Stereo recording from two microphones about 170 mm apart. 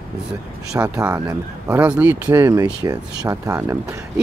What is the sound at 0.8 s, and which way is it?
Speech, 20° right (ahead or behind).